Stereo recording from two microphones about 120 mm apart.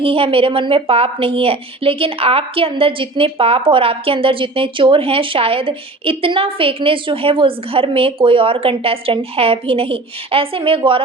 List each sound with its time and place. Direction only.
0.0 s a woman's voice: 50° right (ahead or behind)